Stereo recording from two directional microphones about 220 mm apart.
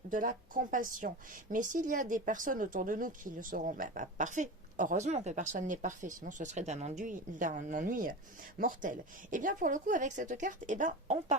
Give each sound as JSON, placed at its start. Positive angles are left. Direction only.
{"t": 0.1, "sound": "a woman's voice", "side_deg": -40}